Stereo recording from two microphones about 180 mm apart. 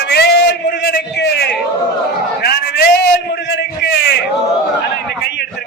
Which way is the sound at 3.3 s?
75° left (ahead or behind).